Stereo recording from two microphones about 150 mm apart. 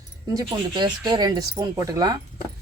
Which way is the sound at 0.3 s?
30° right (ahead or behind).